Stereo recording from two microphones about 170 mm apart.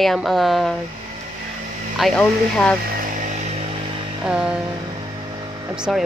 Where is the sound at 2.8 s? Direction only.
55° right (ahead or behind); by 3.8 s 40° right (ahead or behind).